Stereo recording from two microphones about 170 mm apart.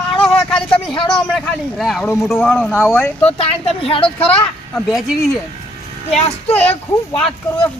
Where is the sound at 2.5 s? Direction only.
10° left (ahead or behind).